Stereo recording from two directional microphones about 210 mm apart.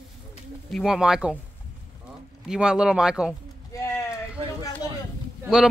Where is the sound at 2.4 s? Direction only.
5° right (ahead or behind).